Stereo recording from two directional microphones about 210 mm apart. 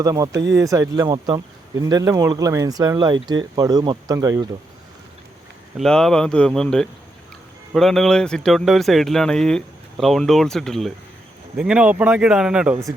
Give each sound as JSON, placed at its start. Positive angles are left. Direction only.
{"t": 0.0, "sound": "speech", "side_deg": -15}
{"t": 5.7, "sound": "speech", "side_deg": 0}